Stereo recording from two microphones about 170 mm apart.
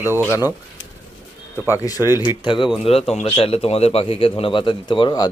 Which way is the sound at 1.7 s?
20° left (ahead or behind).